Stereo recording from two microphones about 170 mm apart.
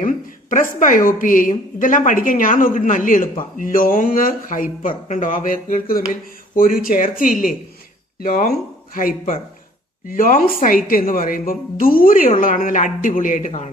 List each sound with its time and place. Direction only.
0.0 s a man's voice: 50° left (ahead or behind)